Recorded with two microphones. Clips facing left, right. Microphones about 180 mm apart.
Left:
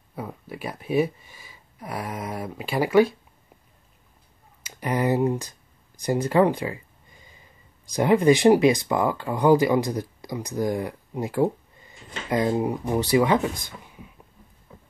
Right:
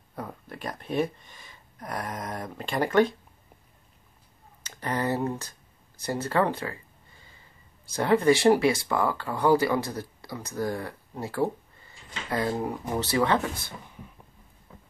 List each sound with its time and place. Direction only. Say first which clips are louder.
0.1 s speech: left 3 dB; 5° left (ahead or behind)
4.6 s speech: left 5 dB; 10° left (ahead or behind)